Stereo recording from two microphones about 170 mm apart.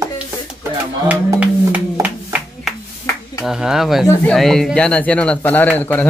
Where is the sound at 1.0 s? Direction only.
10° right (ahead or behind).